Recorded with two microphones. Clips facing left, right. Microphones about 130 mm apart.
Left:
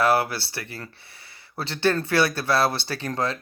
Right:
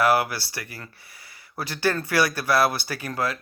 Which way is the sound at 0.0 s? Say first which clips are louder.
Even; 25° left (ahead or behind).